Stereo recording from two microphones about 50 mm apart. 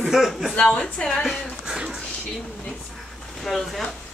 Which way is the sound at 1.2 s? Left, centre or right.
Centre.